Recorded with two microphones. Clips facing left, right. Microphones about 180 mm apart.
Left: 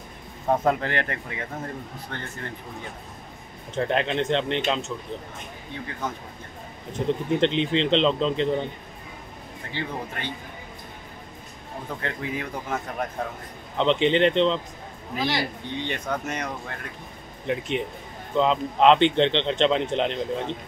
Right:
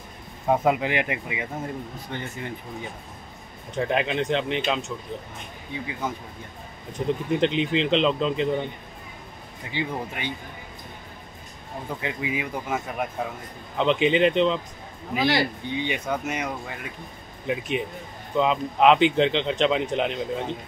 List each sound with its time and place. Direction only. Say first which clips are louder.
0.5 s a man's voice: right 1 dB; 10° right (ahead or behind)
9.7 s a man's voice: right 3 dB; 15° right (ahead or behind)
12.0 s a man's voice: right 2 dB; 10° right (ahead or behind)
15.1 s a man's voice: right 4 dB; 65° right (ahead or behind)
15.7 s a man's voice: left 1 dB; 10° right (ahead or behind)